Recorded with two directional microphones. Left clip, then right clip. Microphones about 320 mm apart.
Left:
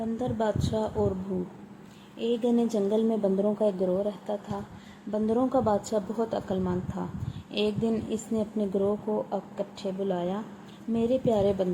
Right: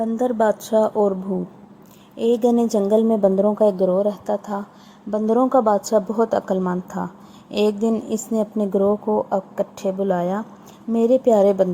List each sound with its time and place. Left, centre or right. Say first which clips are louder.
0.2 s speech: right 10 dB; centre
2.1 s speech: right 9 dB; centre